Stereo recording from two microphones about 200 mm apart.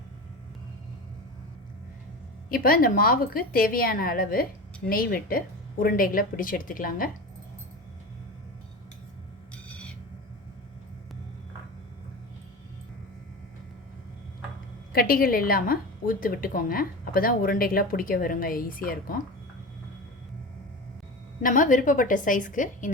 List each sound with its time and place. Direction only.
2.5 s a woman's voice: 45° left (ahead or behind)
14.9 s a woman's voice: 45° left (ahead or behind)
21.4 s a woman's voice: 40° left (ahead or behind)